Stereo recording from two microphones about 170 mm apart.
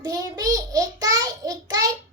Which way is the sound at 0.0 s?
20° right (ahead or behind).